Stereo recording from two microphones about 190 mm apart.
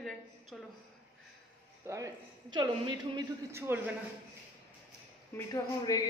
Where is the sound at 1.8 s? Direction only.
15° right (ahead or behind).